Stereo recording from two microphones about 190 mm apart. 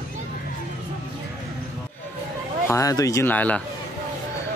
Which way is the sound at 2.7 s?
15° left (ahead or behind).